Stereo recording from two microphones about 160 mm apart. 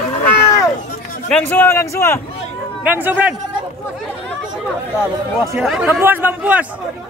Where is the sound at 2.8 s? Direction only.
10° right (ahead or behind).